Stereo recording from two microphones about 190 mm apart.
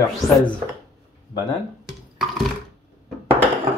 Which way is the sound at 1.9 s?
Centre (ahead or behind).